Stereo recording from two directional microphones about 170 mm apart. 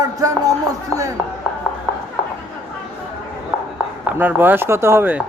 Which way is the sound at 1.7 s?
Centre (ahead or behind).